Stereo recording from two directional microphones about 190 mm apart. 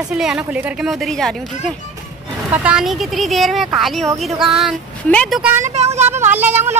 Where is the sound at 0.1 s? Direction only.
Centre (ahead or behind).